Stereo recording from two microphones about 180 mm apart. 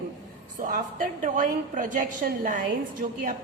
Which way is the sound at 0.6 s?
50° right (ahead or behind).